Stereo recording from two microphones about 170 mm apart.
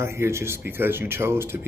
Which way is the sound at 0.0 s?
15° right (ahead or behind).